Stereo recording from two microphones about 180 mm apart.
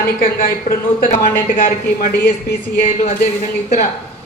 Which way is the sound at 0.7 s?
50° left (ahead or behind).